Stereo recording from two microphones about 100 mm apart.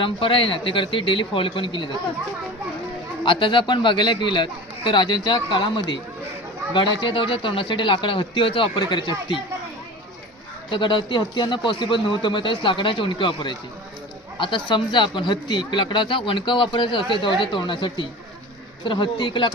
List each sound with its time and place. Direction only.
0.0 s speech: 60° left (ahead or behind)
3.2 s a man's voice: 55° left (ahead or behind)
10.7 s a man's voice: 55° left (ahead or behind)